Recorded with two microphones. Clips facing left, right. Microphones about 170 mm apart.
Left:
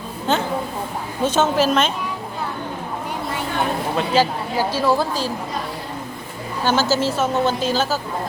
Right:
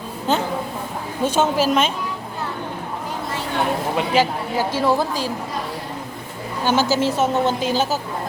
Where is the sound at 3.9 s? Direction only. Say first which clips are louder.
Left 1 dB; 15° right (ahead or behind).